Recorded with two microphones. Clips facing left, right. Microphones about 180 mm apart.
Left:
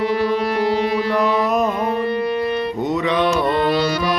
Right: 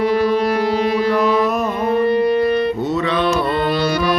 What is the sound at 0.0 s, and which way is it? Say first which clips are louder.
Music: right 3 dB; 40° right (ahead or behind).